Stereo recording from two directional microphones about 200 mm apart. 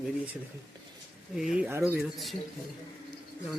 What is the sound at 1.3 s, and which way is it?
Speech, 5° right (ahead or behind).